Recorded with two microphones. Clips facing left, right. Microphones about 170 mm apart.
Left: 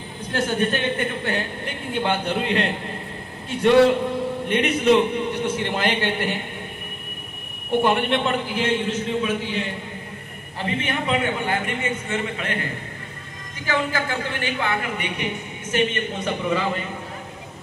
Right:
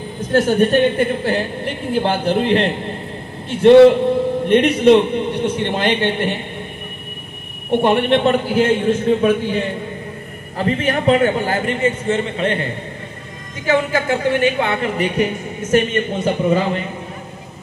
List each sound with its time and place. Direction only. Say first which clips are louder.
0.3 s a woman's voice: right 9 dB; 40° right (ahead or behind)
7.8 s a man's voice: right 7 dB; 35° right (ahead or behind); by 9.7 s 50° right (ahead or behind)
10.6 s a woman's voice: right 8 dB; 40° right (ahead or behind)
13.7 s speech: right 7 dB; 20° right (ahead or behind)
15.0 s a man's voice: right 9 dB; 45° right (ahead or behind)
16.3 s speech: right 7 dB; 30° right (ahead or behind)